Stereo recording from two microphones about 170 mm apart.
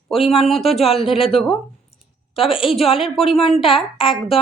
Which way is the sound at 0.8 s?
35° left (ahead or behind).